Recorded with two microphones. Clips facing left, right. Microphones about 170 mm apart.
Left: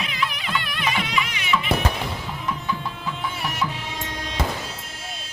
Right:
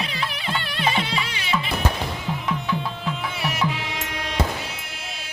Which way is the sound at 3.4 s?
70° right (ahead or behind).